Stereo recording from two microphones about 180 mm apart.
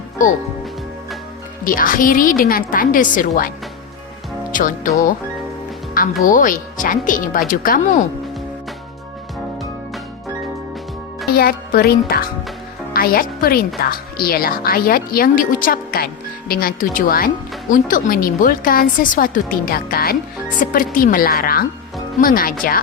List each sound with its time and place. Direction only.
1.6 s speech: 50° left (ahead or behind)
4.5 s speech: 45° left (ahead or behind)
5.9 s speech: 50° left (ahead or behind)
11.3 s speech: 60° left (ahead or behind)